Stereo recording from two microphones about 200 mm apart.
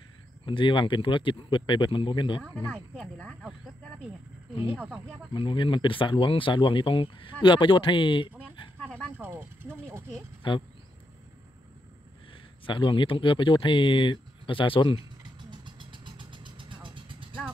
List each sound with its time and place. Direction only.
0.5 s speech: 25° left (ahead or behind)
2.4 s speech: 5° left (ahead or behind)
4.6 s speech: 10° right (ahead or behind)
5.3 s speech: 25° left (ahead or behind)
9.1 s speech: 10° right (ahead or behind)
10.4 s speech: 25° left (ahead or behind)
12.6 s speech: 25° left (ahead or behind)
15.5 s vehicle: 25° right (ahead or behind)